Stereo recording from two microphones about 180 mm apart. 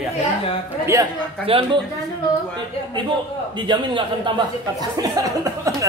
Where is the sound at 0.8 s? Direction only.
15° right (ahead or behind).